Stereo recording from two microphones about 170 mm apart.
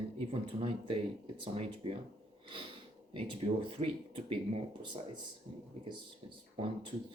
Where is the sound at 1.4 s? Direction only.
35° right (ahead or behind).